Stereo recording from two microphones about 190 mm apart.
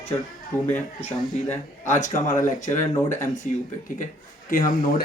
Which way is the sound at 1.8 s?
40° left (ahead or behind).